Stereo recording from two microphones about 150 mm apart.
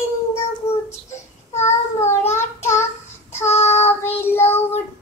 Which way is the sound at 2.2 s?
15° left (ahead or behind).